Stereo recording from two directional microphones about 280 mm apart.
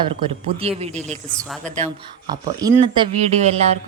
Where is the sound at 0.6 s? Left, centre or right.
Right.